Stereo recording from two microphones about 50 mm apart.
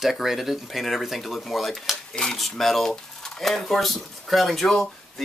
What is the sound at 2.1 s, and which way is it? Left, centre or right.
Speech, centre.